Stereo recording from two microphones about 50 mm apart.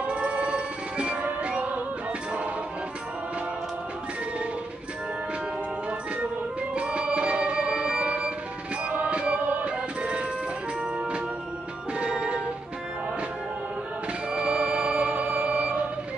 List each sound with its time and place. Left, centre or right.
0.0 s music: right
6.7 s music: right
12.0 s music: centre
14.3 s music: centre